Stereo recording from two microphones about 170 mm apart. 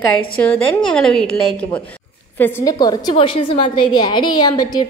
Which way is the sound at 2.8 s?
25° left (ahead or behind).